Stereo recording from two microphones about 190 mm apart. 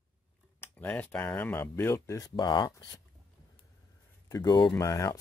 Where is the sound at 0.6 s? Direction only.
10° left (ahead or behind).